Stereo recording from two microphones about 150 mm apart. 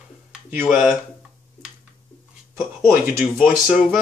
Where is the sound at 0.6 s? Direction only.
Centre (ahead or behind).